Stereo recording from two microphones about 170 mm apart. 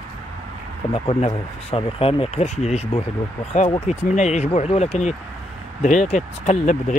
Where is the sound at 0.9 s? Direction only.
35° left (ahead or behind).